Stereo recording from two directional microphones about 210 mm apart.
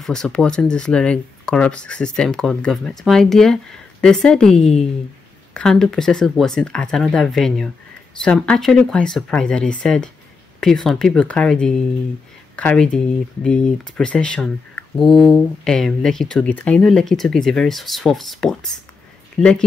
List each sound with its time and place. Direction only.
0.0 s speech: 5° left (ahead or behind)
4.6 s speech: 30° left (ahead or behind)
5.5 s speech: 5° left (ahead or behind)